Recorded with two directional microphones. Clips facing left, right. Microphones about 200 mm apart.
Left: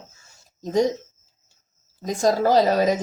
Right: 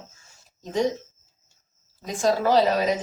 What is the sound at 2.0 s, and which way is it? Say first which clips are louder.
Speech: left 3 dB; 40° left (ahead or behind).